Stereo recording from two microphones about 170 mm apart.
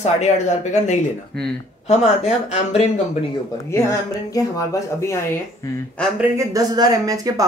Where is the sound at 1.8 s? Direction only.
40° left (ahead or behind).